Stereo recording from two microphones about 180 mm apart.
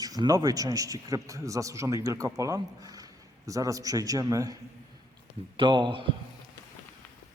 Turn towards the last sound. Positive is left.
turn(degrees=-25)  # may be behind; listen again after turning